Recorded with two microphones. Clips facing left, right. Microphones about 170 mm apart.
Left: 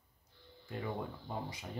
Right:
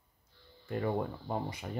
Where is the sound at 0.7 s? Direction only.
55° right (ahead or behind).